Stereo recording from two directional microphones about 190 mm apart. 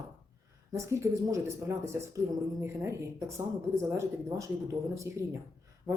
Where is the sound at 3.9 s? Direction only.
15° right (ahead or behind).